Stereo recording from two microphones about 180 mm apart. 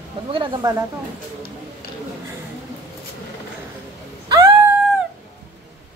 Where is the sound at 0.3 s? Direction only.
25° right (ahead or behind).